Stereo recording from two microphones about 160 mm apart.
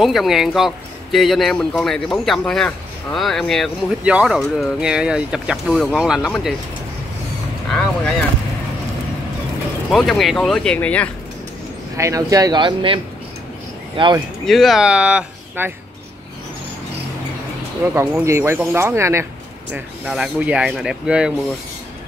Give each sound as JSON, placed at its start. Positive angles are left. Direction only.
{"t": 0.0, "sound": "speech", "side_deg": 0}
{"t": 7.7, "sound": "vehicle", "side_deg": 5}
{"t": 9.8, "sound": "speech", "side_deg": 0}
{"t": 12.0, "sound": "speech", "side_deg": -20}
{"t": 14.4, "sound": "speech", "side_deg": 0}
{"t": 17.9, "sound": "speech", "side_deg": -15}
{"t": 19.7, "sound": "speech", "side_deg": -5}